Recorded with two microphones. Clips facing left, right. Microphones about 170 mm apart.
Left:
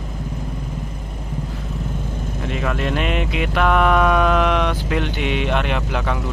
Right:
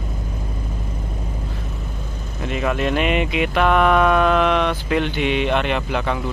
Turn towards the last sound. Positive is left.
turn(degrees=0)  # may be behind; listen again after turning